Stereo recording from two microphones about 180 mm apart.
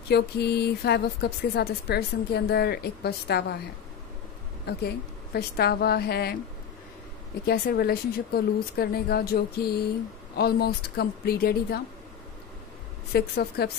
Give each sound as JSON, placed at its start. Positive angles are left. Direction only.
{"t": 0.1, "sound": "speech", "side_deg": 65}
{"t": 4.6, "sound": "speech", "side_deg": 65}
{"t": 7.4, "sound": "speech", "side_deg": 60}
{"t": 13.1, "sound": "speech", "side_deg": 60}